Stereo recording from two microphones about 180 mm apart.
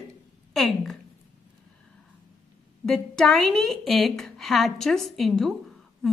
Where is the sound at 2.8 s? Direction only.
5° left (ahead or behind).